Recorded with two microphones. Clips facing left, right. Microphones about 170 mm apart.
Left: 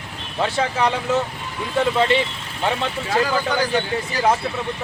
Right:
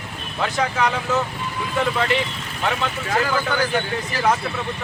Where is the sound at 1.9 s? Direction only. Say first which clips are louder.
Left 6 dB; 30° left (ahead or behind).